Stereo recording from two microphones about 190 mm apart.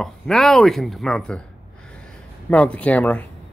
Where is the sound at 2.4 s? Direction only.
5° left (ahead or behind).